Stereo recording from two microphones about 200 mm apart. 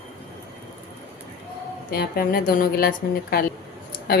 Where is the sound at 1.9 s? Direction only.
50° left (ahead or behind).